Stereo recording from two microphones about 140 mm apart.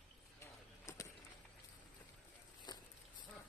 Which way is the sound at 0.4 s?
20° left (ahead or behind).